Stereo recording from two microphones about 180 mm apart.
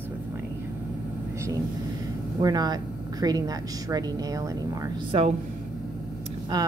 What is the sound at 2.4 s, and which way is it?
Speech, 20° right (ahead or behind).